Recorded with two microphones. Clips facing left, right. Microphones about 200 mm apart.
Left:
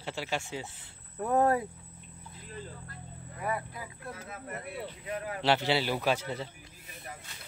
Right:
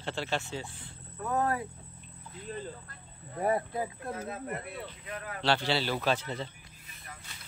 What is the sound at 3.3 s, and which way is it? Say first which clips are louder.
Speech: right 6 dB; 35° right (ahead or behind).